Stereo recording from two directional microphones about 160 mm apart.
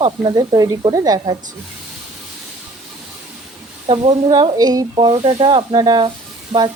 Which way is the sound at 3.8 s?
35° right (ahead or behind).